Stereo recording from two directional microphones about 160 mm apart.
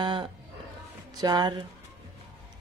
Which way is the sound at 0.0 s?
30° right (ahead or behind).